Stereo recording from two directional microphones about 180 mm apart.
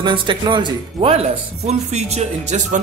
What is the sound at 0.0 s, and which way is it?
Speech, 25° right (ahead or behind).